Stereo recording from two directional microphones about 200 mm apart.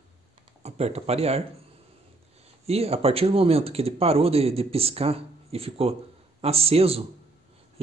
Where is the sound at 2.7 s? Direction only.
30° right (ahead or behind).